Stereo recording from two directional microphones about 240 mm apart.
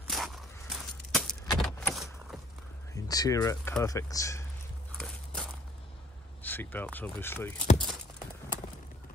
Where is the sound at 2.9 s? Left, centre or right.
Centre.